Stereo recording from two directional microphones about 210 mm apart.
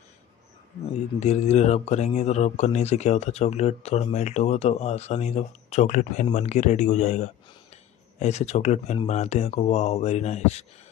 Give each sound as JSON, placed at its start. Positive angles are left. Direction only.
{"t": 1.2, "sound": "speech", "side_deg": 30}